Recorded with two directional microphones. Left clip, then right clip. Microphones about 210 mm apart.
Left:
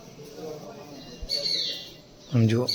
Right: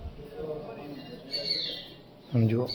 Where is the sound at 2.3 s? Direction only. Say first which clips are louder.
Left 3 dB; 15° left (ahead or behind).